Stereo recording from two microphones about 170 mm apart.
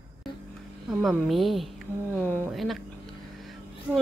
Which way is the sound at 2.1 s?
10° left (ahead or behind).